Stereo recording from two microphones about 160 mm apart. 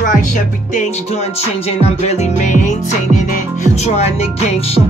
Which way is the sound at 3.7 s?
45° left (ahead or behind).